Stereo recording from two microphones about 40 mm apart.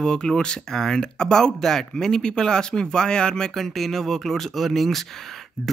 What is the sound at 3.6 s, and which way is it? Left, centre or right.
Speech, centre.